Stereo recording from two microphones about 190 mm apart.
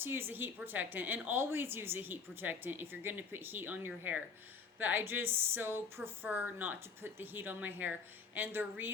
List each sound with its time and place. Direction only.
0.0 s a woman's voice: 10° right (ahead or behind)